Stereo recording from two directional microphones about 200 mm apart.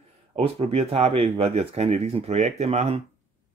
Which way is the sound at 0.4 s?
30° right (ahead or behind).